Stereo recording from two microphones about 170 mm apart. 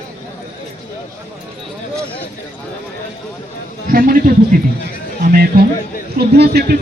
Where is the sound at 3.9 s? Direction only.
55° right (ahead or behind).